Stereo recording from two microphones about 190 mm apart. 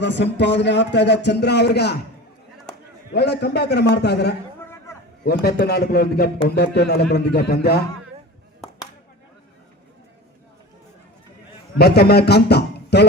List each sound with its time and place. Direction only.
0.0 s speech: 65° left (ahead or behind)
3.1 s speech: 60° left (ahead or behind)
11.8 s a man's voice: 60° left (ahead or behind)